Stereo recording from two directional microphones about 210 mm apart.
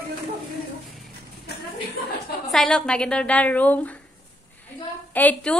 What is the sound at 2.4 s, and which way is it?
A woman's voice, 5° left (ahead or behind).